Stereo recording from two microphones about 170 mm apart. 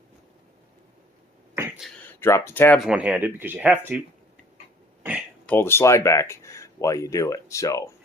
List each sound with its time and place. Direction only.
2.0 s speech: 15° left (ahead or behind)
2.8 s speech: 5° right (ahead or behind)
5.5 s speech: 15° left (ahead or behind)